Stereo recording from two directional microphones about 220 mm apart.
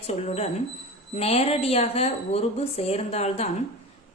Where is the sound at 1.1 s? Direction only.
30° left (ahead or behind).